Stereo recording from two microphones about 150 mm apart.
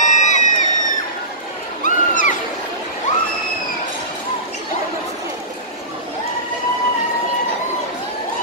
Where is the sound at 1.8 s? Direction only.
60° left (ahead or behind).